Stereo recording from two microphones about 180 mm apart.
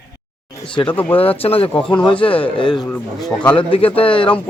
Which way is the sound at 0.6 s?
30° left (ahead or behind).